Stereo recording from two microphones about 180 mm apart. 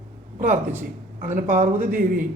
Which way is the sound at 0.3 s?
50° right (ahead or behind).